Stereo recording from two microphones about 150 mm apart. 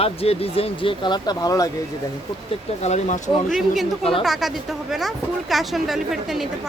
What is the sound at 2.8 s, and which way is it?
Speech, 50° left (ahead or behind).